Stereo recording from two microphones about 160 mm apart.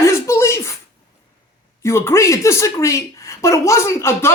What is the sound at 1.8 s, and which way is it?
Speech, 15° left (ahead or behind).